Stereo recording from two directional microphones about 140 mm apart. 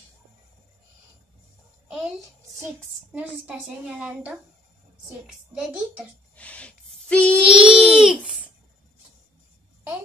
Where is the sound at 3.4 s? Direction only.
10° right (ahead or behind).